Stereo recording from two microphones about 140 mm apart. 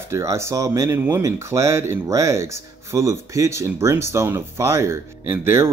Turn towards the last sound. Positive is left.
turn(degrees=-20)  # may be behind; listen again after turning